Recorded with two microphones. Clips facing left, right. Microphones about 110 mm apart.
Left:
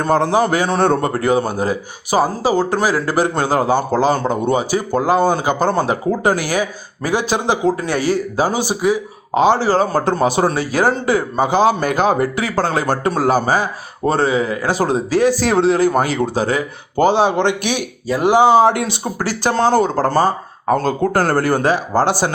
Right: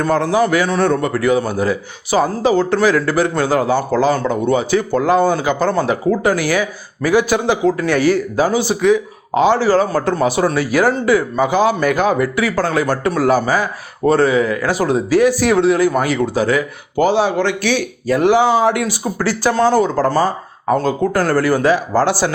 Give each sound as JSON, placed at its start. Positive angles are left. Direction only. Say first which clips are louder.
{"t": 0.0, "sound": "speech", "louder": "even", "side_deg": 25}
{"t": 2.4, "sound": "a man's voice", "louder": "right 2 dB", "side_deg": 10}
{"t": 4.5, "sound": "a man's voice", "louder": "right 2 dB", "side_deg": 10}
{"t": 9.3, "sound": "a man's voice", "louder": "right 1 dB", "side_deg": 20}
{"t": 18.5, "sound": "speech", "louder": "left 3 dB", "side_deg": 30}
{"t": 20.8, "sound": "speech", "louder": "even", "side_deg": 45}